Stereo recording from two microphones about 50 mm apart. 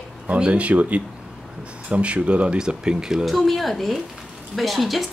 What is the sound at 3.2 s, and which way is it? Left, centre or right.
A woman's voice, centre.